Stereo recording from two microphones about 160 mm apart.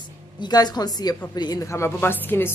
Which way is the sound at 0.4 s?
25° left (ahead or behind).